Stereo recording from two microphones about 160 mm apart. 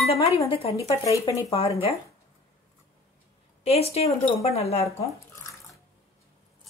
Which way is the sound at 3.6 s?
40° left (ahead or behind).